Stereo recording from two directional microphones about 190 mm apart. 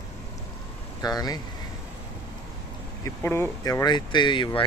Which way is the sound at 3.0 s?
15° left (ahead or behind).